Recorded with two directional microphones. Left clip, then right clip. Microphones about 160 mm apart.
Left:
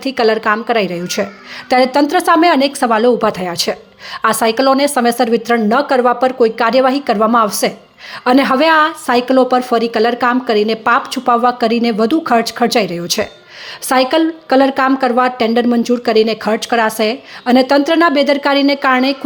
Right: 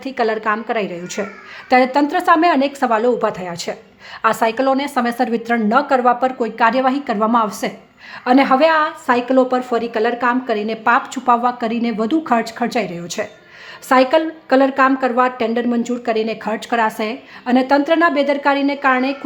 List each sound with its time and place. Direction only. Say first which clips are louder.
0.0 s speech: left 5 dB; 20° left (ahead or behind)